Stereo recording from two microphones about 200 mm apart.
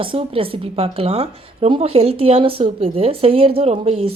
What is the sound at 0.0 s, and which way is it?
A woman's voice, 25° right (ahead or behind).